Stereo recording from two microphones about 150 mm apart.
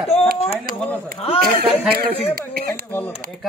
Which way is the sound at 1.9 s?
90° right.